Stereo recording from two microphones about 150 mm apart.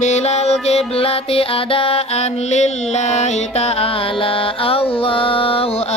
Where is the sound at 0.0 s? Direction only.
45° left (ahead or behind).